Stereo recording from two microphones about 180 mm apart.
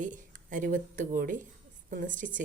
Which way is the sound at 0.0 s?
45° right (ahead or behind).